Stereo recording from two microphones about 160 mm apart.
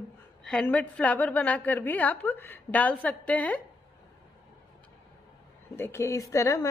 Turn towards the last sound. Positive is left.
turn(degrees=20)  # may be behind; listen again after turning